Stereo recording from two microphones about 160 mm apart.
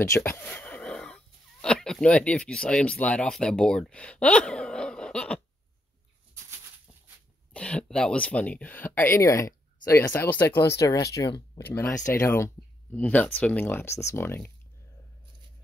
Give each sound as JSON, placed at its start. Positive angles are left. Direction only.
{"t": 0.1, "sound": "speech", "side_deg": 15}
{"t": 7.5, "sound": "speech", "side_deg": 5}